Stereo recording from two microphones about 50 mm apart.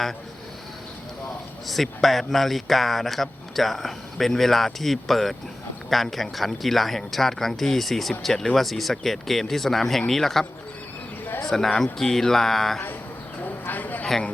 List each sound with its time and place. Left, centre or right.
1.6 s speech: centre
11.4 s speech: centre
13.4 s a sound: left